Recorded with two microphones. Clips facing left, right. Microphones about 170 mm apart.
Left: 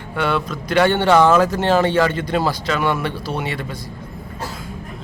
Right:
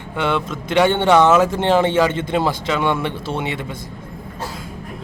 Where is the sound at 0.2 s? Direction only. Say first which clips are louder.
Even; 20° right (ahead or behind).